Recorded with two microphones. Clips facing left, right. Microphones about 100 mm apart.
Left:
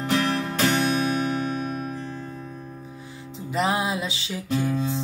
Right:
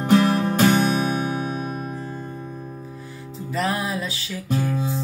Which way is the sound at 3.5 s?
20° left (ahead or behind).